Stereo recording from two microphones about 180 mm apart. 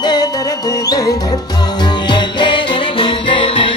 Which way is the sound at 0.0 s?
20° left (ahead or behind).